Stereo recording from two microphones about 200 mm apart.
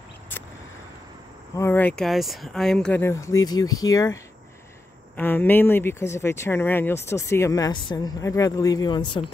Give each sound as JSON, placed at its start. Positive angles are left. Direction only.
{"t": 1.6, "sound": "speech", "side_deg": 10}